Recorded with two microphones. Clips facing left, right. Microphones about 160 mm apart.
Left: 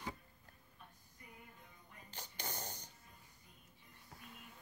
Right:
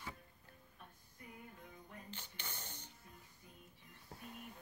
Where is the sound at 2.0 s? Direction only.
40° left (ahead or behind).